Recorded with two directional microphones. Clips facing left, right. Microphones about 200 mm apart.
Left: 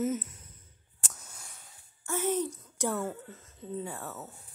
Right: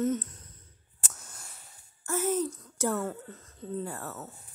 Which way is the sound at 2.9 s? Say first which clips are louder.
Right 2 dB; 5° left (ahead or behind).